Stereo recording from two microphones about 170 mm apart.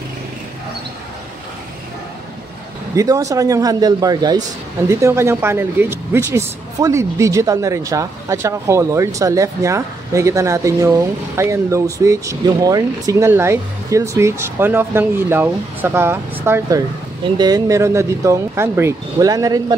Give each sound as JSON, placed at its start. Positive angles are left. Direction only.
{"t": 3.0, "sound": "speech", "side_deg": -20}